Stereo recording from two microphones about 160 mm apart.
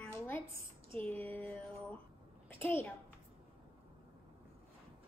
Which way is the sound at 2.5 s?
15° left (ahead or behind).